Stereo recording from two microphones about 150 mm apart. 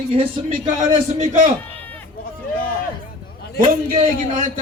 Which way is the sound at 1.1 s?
55° right (ahead or behind).